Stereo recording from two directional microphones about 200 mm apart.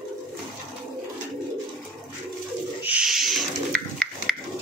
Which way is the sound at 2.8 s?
5° right (ahead or behind).